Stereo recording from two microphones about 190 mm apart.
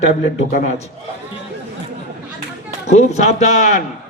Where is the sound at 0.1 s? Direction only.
35° left (ahead or behind).